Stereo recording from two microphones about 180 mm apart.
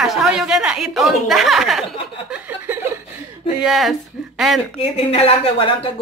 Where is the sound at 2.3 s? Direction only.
10° right (ahead or behind).